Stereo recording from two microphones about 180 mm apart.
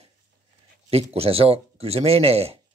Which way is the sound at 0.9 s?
35° right (ahead or behind).